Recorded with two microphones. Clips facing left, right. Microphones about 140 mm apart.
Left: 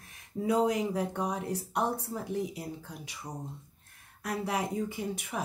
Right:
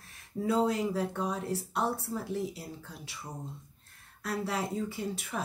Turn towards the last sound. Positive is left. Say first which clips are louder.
# even
turn(degrees=20)  # may be behind; listen again after turning